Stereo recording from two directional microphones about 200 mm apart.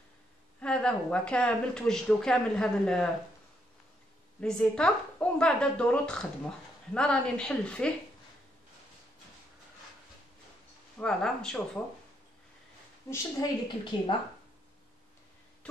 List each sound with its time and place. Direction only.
0.6 s speech: 5° left (ahead or behind)
4.4 s speech: 5° left (ahead or behind)
11.0 s speech: 5° left (ahead or behind)
13.1 s a woman's voice: 20° left (ahead or behind)